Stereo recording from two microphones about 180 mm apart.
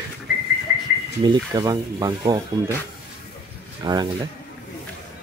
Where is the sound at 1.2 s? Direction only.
25° right (ahead or behind).